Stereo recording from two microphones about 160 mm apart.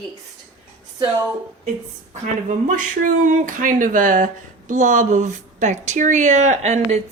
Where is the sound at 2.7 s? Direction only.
55° right (ahead or behind).